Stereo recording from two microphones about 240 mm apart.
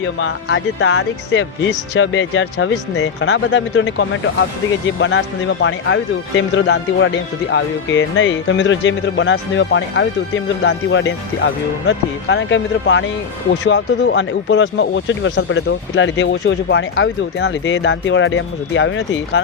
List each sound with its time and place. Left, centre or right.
0.2 s speech: left